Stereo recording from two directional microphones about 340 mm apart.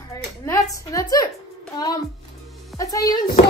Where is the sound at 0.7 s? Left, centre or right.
Centre.